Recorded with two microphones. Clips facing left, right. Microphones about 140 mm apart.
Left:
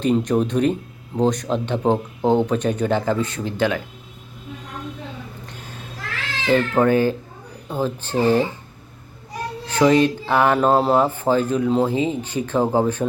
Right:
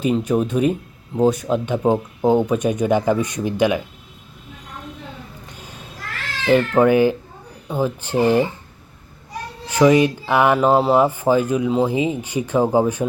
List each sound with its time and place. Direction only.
0.0 s speech: 10° right (ahead or behind)
6.5 s speech: 15° right (ahead or behind)
9.6 s speech: 10° right (ahead or behind)